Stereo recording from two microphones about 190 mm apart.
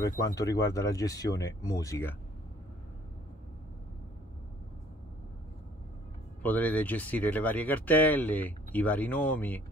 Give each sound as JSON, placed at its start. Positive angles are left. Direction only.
{"t": 0.2, "sound": "speech", "side_deg": 15}
{"t": 6.4, "sound": "speech", "side_deg": 10}